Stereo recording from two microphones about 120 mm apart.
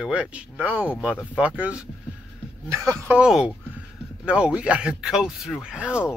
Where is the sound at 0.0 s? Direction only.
10° right (ahead or behind).